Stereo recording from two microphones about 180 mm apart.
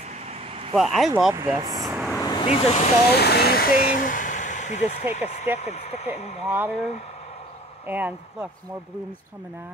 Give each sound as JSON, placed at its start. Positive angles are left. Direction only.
{"t": 0.3, "sound": "vehicle", "side_deg": -35}
{"t": 0.7, "sound": "speech", "side_deg": 0}
{"t": 1.3, "sound": "speech", "side_deg": -15}
{"t": 1.6, "sound": "vehicle", "side_deg": -20}
{"t": 2.1, "sound": "vehicle", "side_deg": 20}
{"t": 2.4, "sound": "speech", "side_deg": 35}
{"t": 3.1, "sound": "speech", "side_deg": 65}
{"t": 6.5, "sound": "speech", "side_deg": -10}